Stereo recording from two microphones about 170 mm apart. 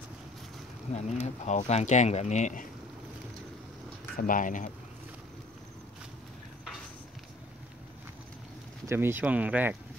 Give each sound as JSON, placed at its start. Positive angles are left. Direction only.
{"t": 0.9, "sound": "speech", "side_deg": 40}
{"t": 4.2, "sound": "speech", "side_deg": 50}
{"t": 8.8, "sound": "speech", "side_deg": -15}